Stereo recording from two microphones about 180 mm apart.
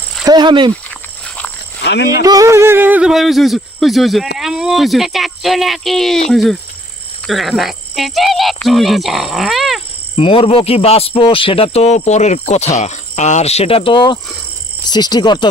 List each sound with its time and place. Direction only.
0.3 s speech: 25° right (ahead or behind)
1.8 s cricket: 70° left (ahead or behind)
2.2 s speech: 20° right (ahead or behind); by 9.8 s centre (ahead or behind)
10.2 s speech: 30° left (ahead or behind)